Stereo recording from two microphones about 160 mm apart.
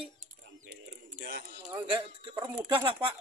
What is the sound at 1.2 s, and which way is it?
Speech, 75° right (ahead or behind).